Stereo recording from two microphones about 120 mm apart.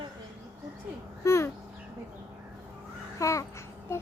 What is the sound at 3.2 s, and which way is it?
Child singing, 25° left (ahead or behind).